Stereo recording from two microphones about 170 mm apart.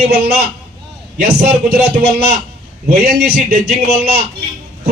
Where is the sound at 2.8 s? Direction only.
70° right (ahead or behind).